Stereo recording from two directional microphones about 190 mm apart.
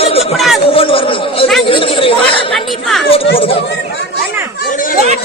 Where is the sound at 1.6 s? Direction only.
25° left (ahead or behind).